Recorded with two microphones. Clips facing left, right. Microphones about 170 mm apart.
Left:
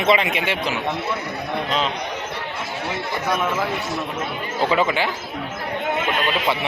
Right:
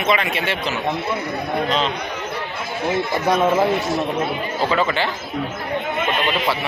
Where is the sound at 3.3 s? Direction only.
30° right (ahead or behind).